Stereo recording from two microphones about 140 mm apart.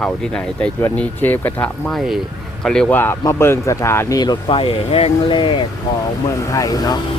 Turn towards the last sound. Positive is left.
turn(degrees=25)  # may be behind; listen again after turning